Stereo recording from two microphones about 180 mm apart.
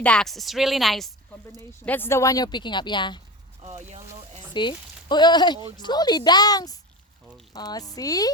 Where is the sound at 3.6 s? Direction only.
40° right (ahead or behind).